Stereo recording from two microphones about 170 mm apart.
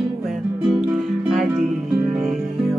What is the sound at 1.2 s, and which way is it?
Music, centre (ahead or behind).